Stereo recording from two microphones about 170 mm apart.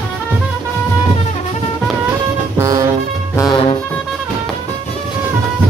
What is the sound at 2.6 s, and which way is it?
Music, 20° right (ahead or behind).